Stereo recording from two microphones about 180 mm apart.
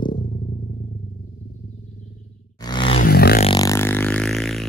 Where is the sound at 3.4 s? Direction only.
20° left (ahead or behind); by 4.6 s centre (ahead or behind).